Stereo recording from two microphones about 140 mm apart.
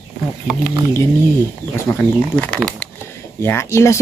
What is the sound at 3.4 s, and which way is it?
Speech, 20° left (ahead or behind).